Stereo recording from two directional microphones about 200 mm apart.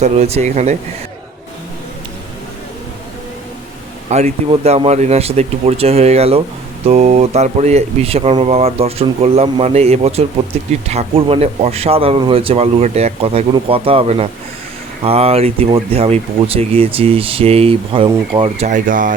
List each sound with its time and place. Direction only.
0.0 s speech: 30° right (ahead or behind)
4.1 s speech: 30° right (ahead or behind)